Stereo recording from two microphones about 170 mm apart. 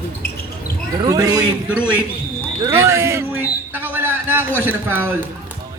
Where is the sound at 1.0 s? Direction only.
20° right (ahead or behind).